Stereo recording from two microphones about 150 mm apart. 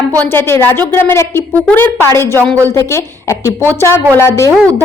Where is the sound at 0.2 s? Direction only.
15° left (ahead or behind).